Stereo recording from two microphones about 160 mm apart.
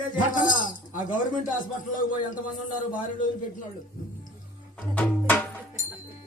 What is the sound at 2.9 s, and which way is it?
Music, 55° left (ahead or behind).